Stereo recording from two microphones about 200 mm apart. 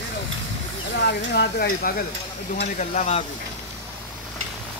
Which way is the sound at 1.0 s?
55° left (ahead or behind).